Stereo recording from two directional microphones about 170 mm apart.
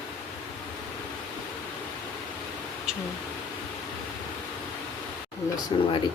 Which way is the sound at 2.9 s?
5° right (ahead or behind).